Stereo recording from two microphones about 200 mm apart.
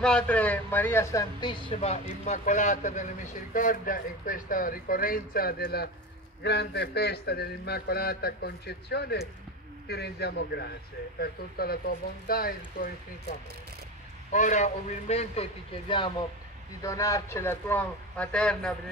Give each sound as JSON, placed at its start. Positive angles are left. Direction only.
{"t": 0.0, "sound": "a man's voice", "side_deg": 5}